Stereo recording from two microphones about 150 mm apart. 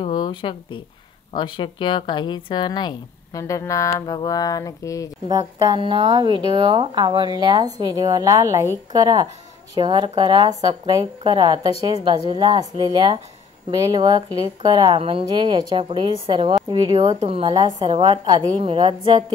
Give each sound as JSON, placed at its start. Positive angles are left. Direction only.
{"t": 0.0, "sound": "a woman's voice", "side_deg": 30}
{"t": 5.6, "sound": "a woman's voice", "side_deg": -30}